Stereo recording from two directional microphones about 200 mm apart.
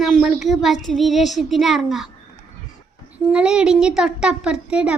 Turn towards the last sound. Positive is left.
turn(degrees=-5)  # may be behind; listen again after turning